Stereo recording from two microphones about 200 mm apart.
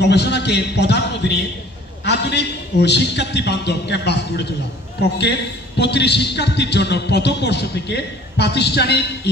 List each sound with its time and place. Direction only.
0.0 s a man's voice: 55° left (ahead or behind)